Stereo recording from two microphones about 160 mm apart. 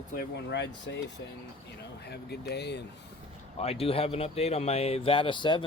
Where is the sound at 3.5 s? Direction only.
40° left (ahead or behind).